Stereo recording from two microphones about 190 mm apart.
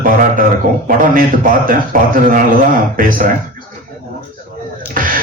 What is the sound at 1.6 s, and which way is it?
Speech, 50° right (ahead or behind).